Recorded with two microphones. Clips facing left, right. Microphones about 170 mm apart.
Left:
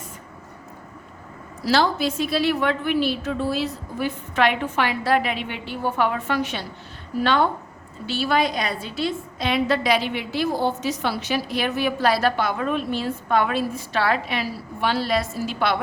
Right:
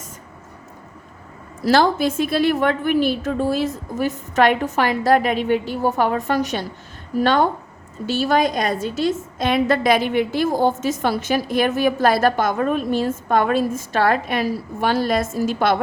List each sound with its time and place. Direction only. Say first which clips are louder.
1.6 s a woman's voice: right 4 dB; 50° right (ahead or behind)